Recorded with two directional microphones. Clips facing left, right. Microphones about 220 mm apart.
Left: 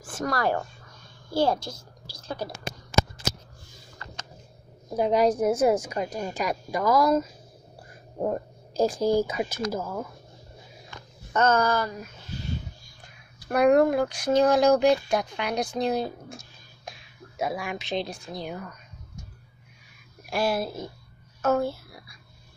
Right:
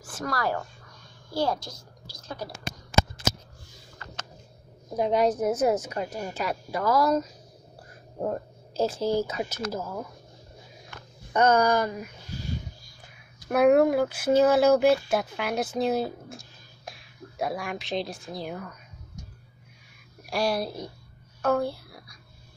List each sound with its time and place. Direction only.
0.2 s speech: 25° left (ahead or behind)
4.9 s a woman's voice: 5° left (ahead or behind)
11.3 s speech: 15° right (ahead or behind)
13.5 s speech: 5° right (ahead or behind)
20.2 s a woman's voice: centre (ahead or behind)
21.4 s whispering: 5° left (ahead or behind)